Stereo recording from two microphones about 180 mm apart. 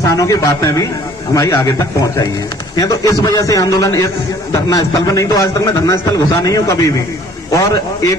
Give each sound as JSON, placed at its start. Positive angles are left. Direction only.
{"t": 0.1, "sound": "a man's voice", "side_deg": 15}